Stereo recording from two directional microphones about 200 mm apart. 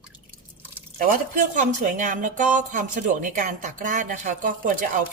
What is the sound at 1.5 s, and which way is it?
A woman's voice, 40° right (ahead or behind).